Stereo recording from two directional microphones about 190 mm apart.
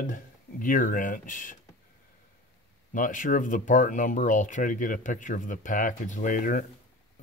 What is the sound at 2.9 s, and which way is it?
Speech, 45° left (ahead or behind).